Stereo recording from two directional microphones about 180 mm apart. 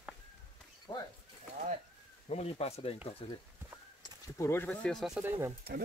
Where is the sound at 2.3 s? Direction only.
35° left (ahead or behind).